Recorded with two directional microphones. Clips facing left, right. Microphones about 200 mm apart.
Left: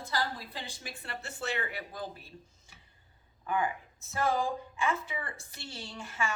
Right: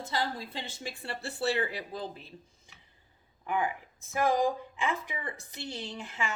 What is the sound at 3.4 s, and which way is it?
A woman's voice, 15° right (ahead or behind).